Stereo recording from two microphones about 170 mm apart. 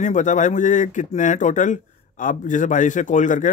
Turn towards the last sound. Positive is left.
turn(degrees=50)  # may be behind; listen again after turning